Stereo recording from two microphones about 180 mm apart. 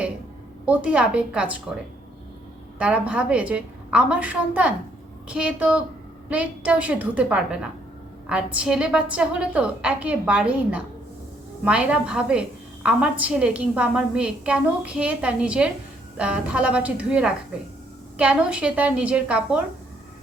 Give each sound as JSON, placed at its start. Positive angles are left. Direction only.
{"t": 0.6, "sound": "a woman's voice", "side_deg": -5}